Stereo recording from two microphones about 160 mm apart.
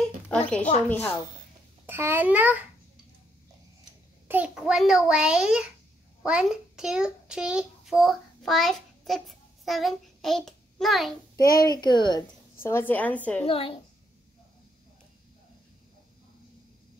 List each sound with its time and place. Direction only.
0.0 s a sound: 5° left (ahead or behind)
0.8 s a woman's voice: 10° left (ahead or behind)
1.9 s a child's voice: 15° right (ahead or behind)
4.3 s a child's voice: 5° right (ahead or behind)
11.6 s a child's voice: 25° left (ahead or behind)
12.6 s a woman's voice: 15° left (ahead or behind)
13.5 s a woman's voice: 35° left (ahead or behind)